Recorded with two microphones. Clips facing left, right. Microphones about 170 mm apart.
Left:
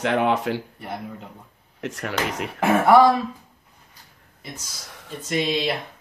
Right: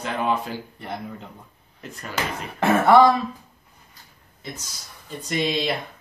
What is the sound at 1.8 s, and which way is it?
Speech, 80° left.